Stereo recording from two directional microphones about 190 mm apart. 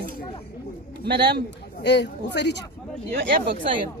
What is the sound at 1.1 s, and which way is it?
Speech, 60° right (ahead or behind).